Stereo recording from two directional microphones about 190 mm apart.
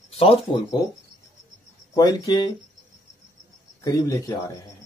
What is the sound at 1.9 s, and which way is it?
Speech, 20° left (ahead or behind).